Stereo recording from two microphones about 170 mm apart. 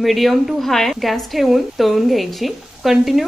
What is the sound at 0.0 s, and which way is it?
A woman's voice, centre (ahead or behind).